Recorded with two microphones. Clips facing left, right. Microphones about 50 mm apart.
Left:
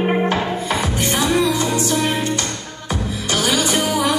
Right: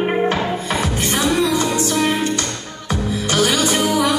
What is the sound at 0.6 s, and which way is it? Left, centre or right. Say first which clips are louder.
Music: even; right.